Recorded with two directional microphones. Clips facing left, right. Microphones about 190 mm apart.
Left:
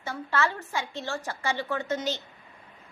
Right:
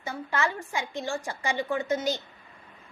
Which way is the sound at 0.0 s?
15° right (ahead or behind).